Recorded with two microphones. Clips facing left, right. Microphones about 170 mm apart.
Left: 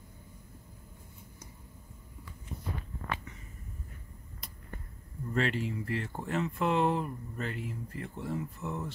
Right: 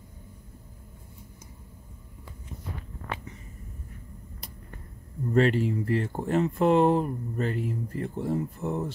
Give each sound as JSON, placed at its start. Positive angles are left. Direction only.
{"t": 5.3, "sound": "speech", "side_deg": -40}